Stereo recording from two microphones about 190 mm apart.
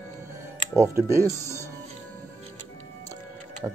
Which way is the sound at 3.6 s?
10° right (ahead or behind).